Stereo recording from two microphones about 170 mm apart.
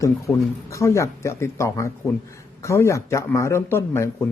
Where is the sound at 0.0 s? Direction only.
15° left (ahead or behind).